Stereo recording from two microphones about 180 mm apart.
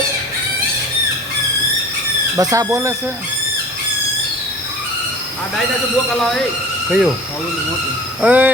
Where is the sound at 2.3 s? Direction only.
20° right (ahead or behind).